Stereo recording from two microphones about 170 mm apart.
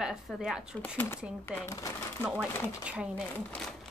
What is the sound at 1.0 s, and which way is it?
Speech, 15° left (ahead or behind).